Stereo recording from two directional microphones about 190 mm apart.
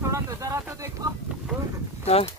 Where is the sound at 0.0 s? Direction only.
15° right (ahead or behind).